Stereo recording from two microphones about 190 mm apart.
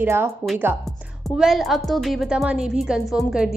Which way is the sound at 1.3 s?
Centre (ahead or behind).